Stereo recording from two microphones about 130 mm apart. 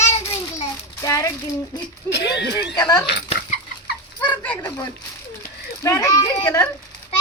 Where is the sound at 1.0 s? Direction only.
25° left (ahead or behind).